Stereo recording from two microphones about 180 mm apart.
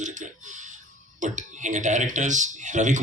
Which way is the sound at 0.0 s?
45° right (ahead or behind).